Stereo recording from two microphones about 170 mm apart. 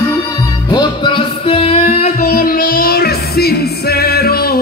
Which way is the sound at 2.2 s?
60° left (ahead or behind).